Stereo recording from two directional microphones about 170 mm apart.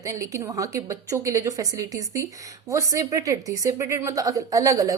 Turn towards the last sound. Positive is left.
turn(degrees=-20)  # may be behind; listen again after turning